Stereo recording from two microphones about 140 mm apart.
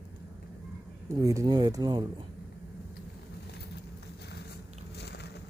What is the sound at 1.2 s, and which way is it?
Speech, 25° right (ahead or behind).